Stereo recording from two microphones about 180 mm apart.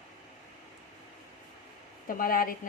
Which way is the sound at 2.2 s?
55° left (ahead or behind).